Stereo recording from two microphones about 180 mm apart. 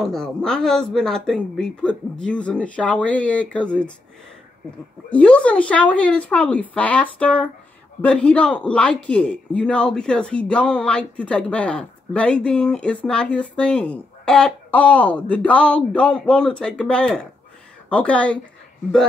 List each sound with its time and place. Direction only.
0.0 s speech: 5° left (ahead or behind)
5.1 s speech: 5° left (ahead or behind)